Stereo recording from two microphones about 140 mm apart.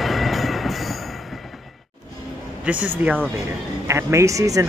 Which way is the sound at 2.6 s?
10° right (ahead or behind).